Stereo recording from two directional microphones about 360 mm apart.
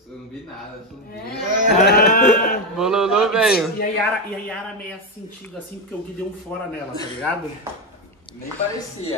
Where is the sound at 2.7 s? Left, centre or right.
Centre.